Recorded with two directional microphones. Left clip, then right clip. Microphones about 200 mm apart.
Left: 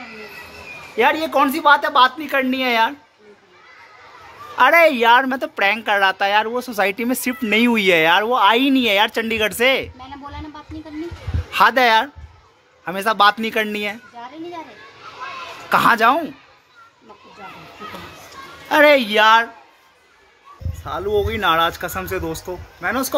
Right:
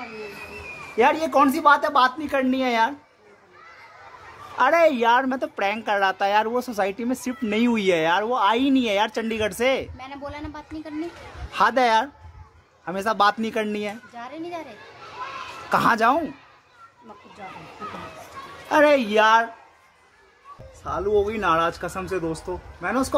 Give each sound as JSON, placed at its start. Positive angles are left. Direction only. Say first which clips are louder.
{"t": 0.9, "sound": "a woman's voice", "louder": "left 2 dB", "side_deg": -5}
{"t": 4.6, "sound": "a woman's voice", "louder": "left 5 dB", "side_deg": 5}
{"t": 6.8, "sound": "speech", "louder": "left 5 dB", "side_deg": 10}
{"t": 9.9, "sound": "speech", "louder": "even", "side_deg": -15}
{"t": 11.5, "sound": "a woman's voice", "louder": "left 5 dB", "side_deg": 5}
{"t": 15.7, "sound": "a woman's voice", "louder": "left 5 dB", "side_deg": 5}
{"t": 18.7, "sound": "a woman's voice", "louder": "left 5 dB", "side_deg": 0}
{"t": 20.8, "sound": "a woman's voice", "louder": "left 1 dB", "side_deg": 0}